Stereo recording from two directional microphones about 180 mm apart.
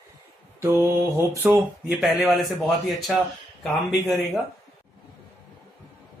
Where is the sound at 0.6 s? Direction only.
15° right (ahead or behind).